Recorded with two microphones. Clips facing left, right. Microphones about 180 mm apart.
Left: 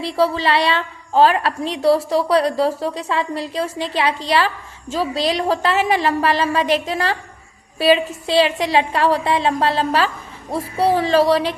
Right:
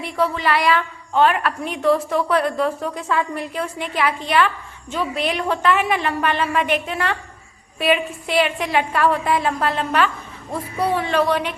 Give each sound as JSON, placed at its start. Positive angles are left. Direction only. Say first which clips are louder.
{"t": 0.0, "sound": "a woman's voice", "louder": "left 3 dB", "side_deg": 30}